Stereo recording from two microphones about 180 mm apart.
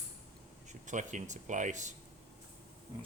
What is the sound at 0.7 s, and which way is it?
Speech, 45° right (ahead or behind).